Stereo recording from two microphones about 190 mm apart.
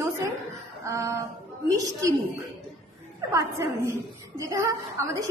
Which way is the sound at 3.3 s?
15° right (ahead or behind).